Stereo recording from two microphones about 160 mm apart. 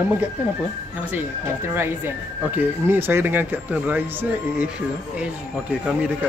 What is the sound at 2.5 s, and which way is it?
Speech, 15° right (ahead or behind).